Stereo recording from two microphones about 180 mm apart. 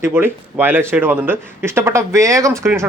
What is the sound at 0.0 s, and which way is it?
Speech, 10° right (ahead or behind).